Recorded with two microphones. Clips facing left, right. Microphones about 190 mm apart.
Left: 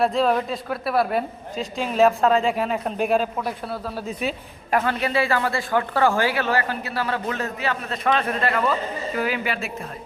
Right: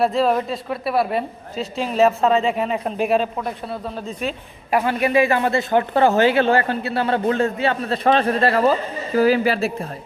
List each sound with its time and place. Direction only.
0.0 s a woman's voice: centre (ahead or behind)
4.7 s speech: 10° right (ahead or behind); by 9.7 s 35° right (ahead or behind)